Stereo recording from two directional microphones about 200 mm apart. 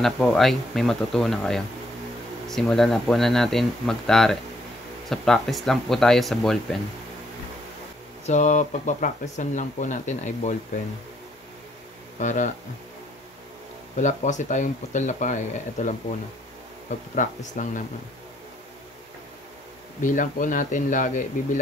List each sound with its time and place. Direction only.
0.0 s speech: centre (ahead or behind)
8.3 s speech: 35° left (ahead or behind)
12.2 s speech: 40° left (ahead or behind)
13.9 s speech: 40° left (ahead or behind)
20.0 s speech: 40° left (ahead or behind)